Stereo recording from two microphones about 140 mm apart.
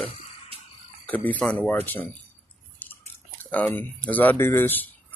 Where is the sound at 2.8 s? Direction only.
10° left (ahead or behind).